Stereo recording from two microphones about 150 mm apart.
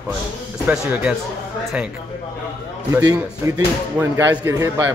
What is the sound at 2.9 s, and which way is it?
A man's voice, 20° right (ahead or behind).